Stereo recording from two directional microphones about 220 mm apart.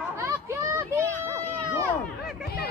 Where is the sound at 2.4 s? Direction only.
45° left (ahead or behind).